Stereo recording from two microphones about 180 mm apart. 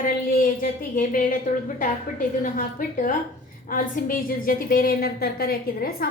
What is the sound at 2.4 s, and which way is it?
A woman's voice, 50° left (ahead or behind).